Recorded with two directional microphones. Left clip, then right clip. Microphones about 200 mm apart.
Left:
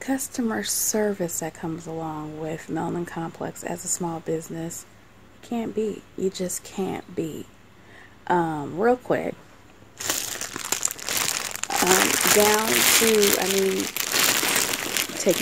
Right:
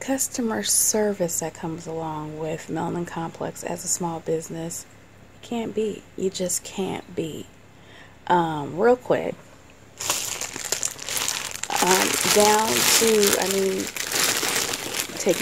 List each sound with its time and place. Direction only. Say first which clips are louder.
0.0 s a woman's voice: right 2 dB; centre (ahead or behind)
11.1 s crumpling: left 2 dB; 30° left (ahead or behind)
11.5 s crumpling: even; 20° left (ahead or behind)